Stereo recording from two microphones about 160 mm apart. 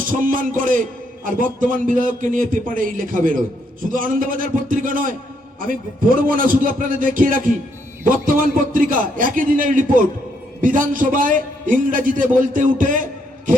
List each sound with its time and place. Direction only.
0.0 s a man's voice: 60° right (ahead or behind)